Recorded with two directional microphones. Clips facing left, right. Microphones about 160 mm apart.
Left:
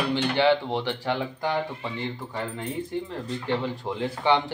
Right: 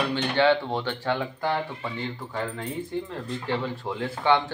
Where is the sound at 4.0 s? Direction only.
15° left (ahead or behind).